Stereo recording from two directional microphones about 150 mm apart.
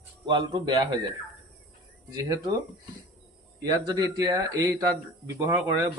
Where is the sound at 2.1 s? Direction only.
25° right (ahead or behind).